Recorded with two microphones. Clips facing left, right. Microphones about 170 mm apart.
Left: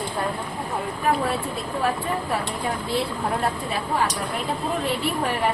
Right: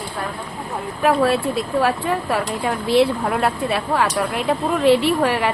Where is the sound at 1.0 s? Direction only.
80° right.